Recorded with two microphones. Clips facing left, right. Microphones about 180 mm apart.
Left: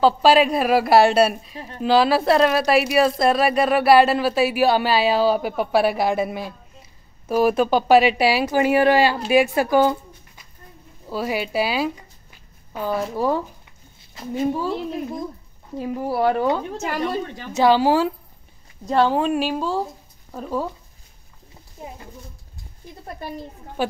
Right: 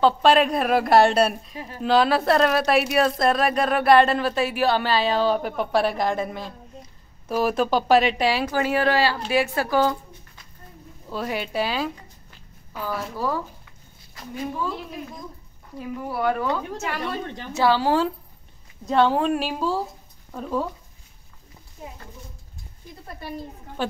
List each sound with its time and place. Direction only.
0.0 s a woman's voice: 5° left (ahead or behind); by 16.8 s 25° left (ahead or behind)
17.6 s a woman's voice: 15° left (ahead or behind)
23.8 s a woman's voice: 10° left (ahead or behind)